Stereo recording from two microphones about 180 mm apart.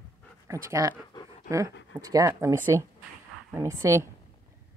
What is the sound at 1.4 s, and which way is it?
Dog, 20° right (ahead or behind).